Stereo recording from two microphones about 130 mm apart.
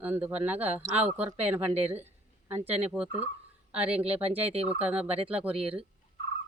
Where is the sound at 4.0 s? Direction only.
50° right (ahead or behind).